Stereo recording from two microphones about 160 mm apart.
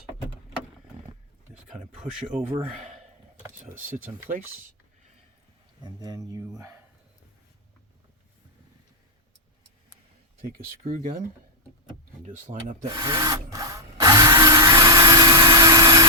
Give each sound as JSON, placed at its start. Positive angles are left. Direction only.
{"t": 2.3, "sound": "speech", "side_deg": -15}
{"t": 5.8, "sound": "speech", "side_deg": -25}
{"t": 10.8, "sound": "speech", "side_deg": -55}
{"t": 12.2, "sound": "speech", "side_deg": -45}
{"t": 12.8, "sound": "rub", "side_deg": -25}